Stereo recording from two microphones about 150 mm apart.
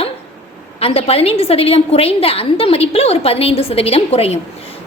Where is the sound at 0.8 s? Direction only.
40° left (ahead or behind).